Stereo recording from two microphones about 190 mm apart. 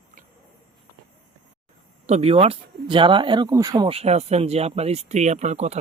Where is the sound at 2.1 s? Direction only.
30° right (ahead or behind).